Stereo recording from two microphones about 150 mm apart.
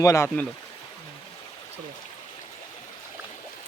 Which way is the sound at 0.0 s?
20° left (ahead or behind).